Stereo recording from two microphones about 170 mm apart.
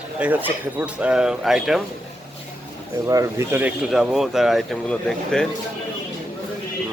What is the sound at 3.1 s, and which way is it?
Speech, 15° right (ahead or behind).